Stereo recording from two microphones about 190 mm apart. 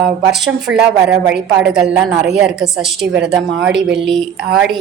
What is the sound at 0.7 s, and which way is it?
Speech, 85° right.